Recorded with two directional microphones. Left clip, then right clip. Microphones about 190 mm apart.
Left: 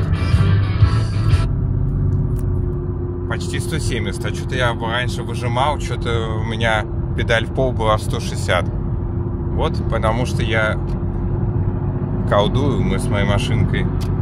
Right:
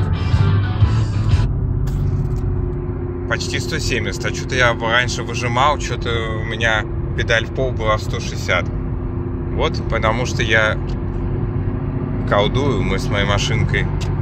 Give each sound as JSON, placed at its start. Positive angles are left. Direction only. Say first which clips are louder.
{"t": 3.3, "sound": "speech", "louder": "right 5 dB", "side_deg": 10}
{"t": 6.0, "sound": "speech", "louder": "even", "side_deg": 20}
{"t": 9.6, "sound": "speech", "louder": "right 2 dB", "side_deg": 15}
{"t": 12.3, "sound": "speech", "louder": "even", "side_deg": 15}